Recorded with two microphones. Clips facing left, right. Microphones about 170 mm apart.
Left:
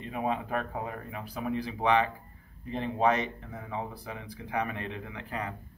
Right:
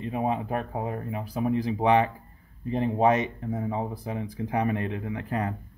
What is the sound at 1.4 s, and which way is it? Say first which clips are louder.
Speech: right 6 dB; 45° right (ahead or behind).